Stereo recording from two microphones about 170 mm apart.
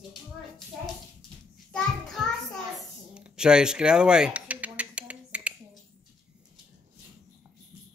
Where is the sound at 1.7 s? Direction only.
5° left (ahead or behind).